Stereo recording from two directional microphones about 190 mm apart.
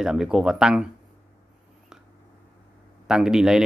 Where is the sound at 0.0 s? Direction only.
5° right (ahead or behind).